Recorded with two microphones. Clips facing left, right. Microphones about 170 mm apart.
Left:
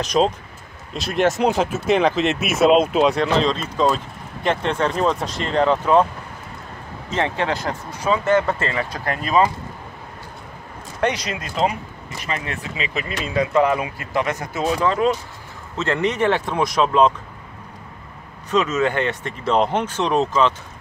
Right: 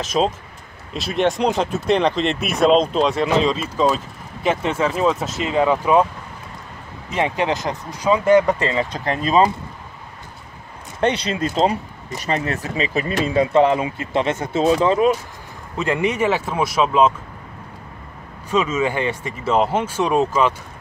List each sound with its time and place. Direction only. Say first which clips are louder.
0.0 s speech: left 1 dB; centre (ahead or behind)
7.1 s speech: right 2 dB; 15° right (ahead or behind)
11.0 s speech: right 3 dB; 30° right (ahead or behind); by 17.1 s 5° right (ahead or behind)
18.5 s speech: even; 10° right (ahead or behind)